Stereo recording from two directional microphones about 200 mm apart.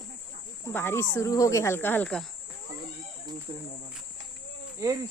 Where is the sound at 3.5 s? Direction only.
25° right (ahead or behind).